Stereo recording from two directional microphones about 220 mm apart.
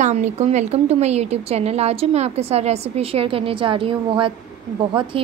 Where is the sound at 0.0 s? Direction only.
30° right (ahead or behind).